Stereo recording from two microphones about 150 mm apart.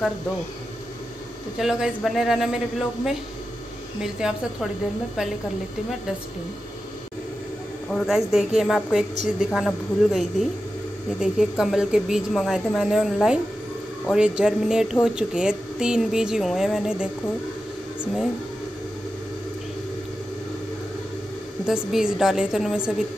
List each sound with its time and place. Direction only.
1.6 s a woman's voice: centre (ahead or behind)
4.0 s a woman's voice: 5° right (ahead or behind)
7.9 s a woman's voice: centre (ahead or behind)
21.6 s a woman's voice: 5° right (ahead or behind)